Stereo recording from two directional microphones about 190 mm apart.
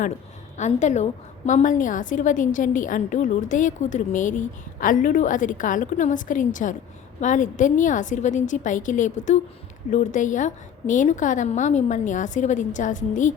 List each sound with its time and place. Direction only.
0.5 s a woman's voice: 40° left (ahead or behind)